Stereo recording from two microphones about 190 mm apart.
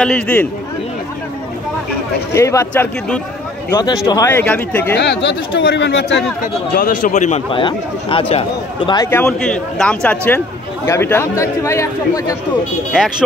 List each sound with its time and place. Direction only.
0.0 s a man's voice: 10° left (ahead or behind)
2.3 s a man's voice: 15° left (ahead or behind)
4.9 s speech: 60° left (ahead or behind)
6.4 s a man's voice: 50° left (ahead or behind); by 12.4 s 15° left (ahead or behind)